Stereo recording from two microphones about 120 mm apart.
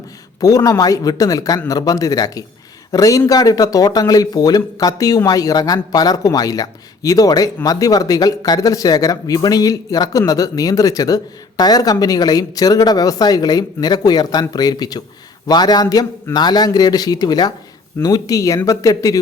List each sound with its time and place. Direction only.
0.3 s a man's voice: 30° left (ahead or behind)